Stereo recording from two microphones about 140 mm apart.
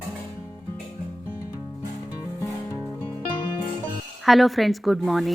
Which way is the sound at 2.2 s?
20° left (ahead or behind).